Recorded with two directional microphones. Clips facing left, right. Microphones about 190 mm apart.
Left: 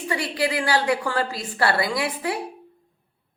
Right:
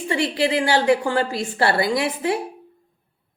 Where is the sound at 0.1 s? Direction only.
25° right (ahead or behind).